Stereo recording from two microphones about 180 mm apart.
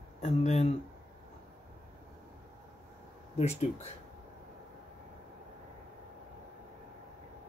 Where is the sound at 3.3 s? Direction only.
35° left (ahead or behind).